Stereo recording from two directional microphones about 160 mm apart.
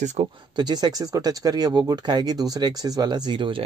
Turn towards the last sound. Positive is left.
turn(degrees=-30)  # may be behind; listen again after turning